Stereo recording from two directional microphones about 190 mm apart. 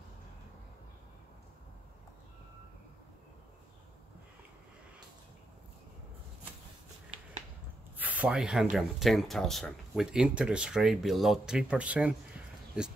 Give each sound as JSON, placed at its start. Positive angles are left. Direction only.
{"t": 8.0, "sound": "speech", "side_deg": -10}